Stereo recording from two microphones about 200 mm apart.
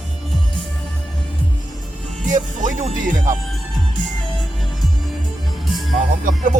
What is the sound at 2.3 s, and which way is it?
Speech, 40° right (ahead or behind).